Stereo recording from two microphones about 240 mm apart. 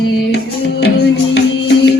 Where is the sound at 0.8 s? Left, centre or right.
Left.